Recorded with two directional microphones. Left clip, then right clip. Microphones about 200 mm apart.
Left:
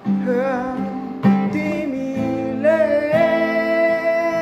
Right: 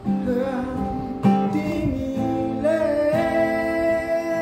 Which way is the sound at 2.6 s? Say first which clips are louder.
Left 5 dB; 15° right (ahead or behind).